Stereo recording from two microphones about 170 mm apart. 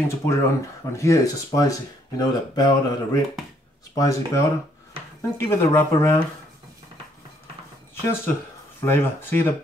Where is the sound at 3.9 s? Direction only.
20° left (ahead or behind).